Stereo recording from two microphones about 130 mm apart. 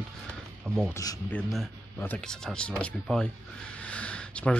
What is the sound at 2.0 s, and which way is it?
Speech, 10° left (ahead or behind).